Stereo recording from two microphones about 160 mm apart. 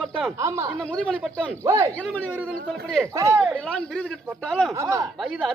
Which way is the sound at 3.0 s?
20° right (ahead or behind).